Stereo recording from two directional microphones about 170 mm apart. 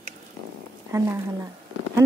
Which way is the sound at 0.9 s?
15° right (ahead or behind).